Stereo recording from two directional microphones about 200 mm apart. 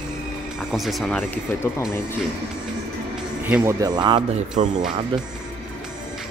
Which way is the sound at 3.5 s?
15° right (ahead or behind).